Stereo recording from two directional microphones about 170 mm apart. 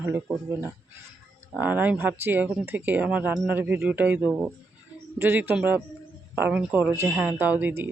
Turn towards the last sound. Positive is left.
turn(degrees=-10)  # may be behind; listen again after turning